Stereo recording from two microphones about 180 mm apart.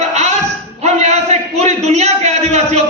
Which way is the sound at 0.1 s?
40° right (ahead or behind).